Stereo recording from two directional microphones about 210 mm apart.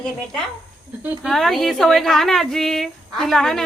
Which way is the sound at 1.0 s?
Centre (ahead or behind).